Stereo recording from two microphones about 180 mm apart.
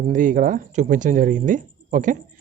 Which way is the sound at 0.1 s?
45° right (ahead or behind).